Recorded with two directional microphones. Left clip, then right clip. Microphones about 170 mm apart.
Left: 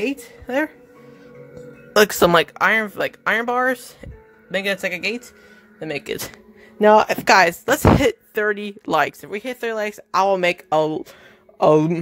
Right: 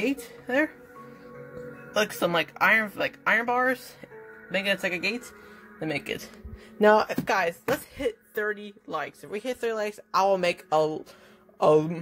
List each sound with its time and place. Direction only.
0.0 s a sound: 25° left (ahead or behind)
2.0 s speech: 65° left (ahead or behind)
2.5 s speech: 35° left (ahead or behind)
5.8 s speech: 10° left (ahead or behind)
6.8 s speech: 35° left (ahead or behind)
7.2 s speech: 55° left (ahead or behind)
9.3 s speech: 25° left (ahead or behind); by 12.0 s 45° left (ahead or behind)